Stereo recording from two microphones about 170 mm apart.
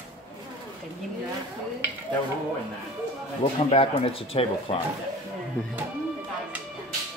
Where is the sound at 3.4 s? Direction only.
35° left (ahead or behind).